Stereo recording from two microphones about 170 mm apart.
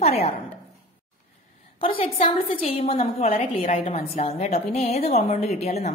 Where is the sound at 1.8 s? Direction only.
35° left (ahead or behind).